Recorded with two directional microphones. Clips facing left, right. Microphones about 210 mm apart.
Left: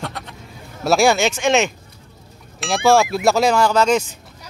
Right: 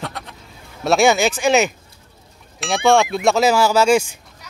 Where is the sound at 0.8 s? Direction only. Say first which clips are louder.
Even; centre (ahead or behind).